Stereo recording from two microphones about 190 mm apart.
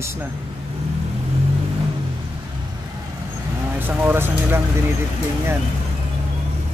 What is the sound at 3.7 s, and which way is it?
Speech, 10° right (ahead or behind).